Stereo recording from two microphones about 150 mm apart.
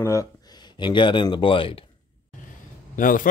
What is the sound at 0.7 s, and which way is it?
Speech, 30° left (ahead or behind).